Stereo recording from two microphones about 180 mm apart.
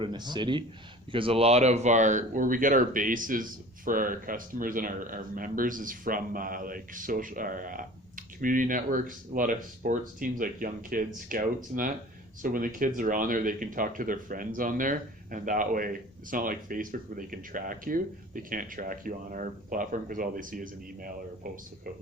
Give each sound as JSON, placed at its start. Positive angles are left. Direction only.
{"t": 0.0, "sound": "speech", "side_deg": -25}